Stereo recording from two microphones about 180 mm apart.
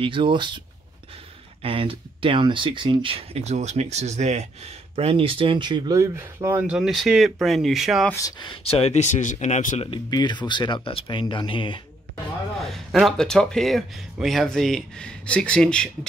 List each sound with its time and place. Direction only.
0.0 s speech: 25° right (ahead or behind)
1.6 s speech: 30° right (ahead or behind); by 8.1 s centre (ahead or behind)
8.1 s speech: 20° left (ahead or behind); by 9.8 s 40° left (ahead or behind)
9.8 s speech: 25° left (ahead or behind)
12.6 s speech: centre (ahead or behind)